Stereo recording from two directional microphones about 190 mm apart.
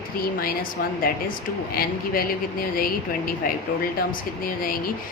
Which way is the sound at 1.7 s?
50° left (ahead or behind).